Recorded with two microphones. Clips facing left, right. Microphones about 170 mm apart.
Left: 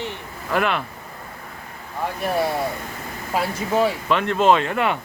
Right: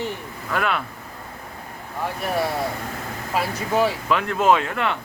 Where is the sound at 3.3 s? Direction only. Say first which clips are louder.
Left 1 dB; 25° left (ahead or behind).